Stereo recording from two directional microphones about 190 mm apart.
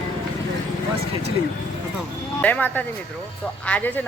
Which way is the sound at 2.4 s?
10° left (ahead or behind).